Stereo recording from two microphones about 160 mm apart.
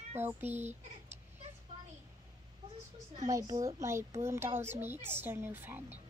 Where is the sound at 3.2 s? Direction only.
20° right (ahead or behind).